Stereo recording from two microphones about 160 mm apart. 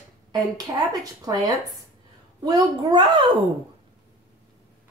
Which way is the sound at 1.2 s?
25° right (ahead or behind).